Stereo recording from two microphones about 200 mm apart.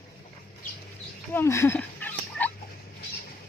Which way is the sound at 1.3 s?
10° left (ahead or behind).